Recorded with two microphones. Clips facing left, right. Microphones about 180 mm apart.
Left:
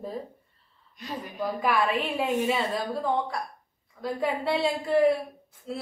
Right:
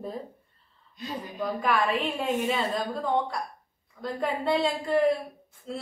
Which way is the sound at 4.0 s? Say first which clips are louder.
Left 1 dB; 5° left (ahead or behind).